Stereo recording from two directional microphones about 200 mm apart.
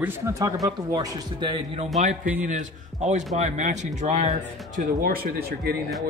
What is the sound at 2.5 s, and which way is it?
A man's voice, 35° right (ahead or behind).